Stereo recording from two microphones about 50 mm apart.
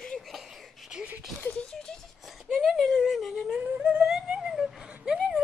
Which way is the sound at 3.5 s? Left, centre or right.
Right.